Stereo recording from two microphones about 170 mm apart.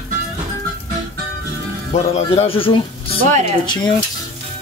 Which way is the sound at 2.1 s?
35° left (ahead or behind).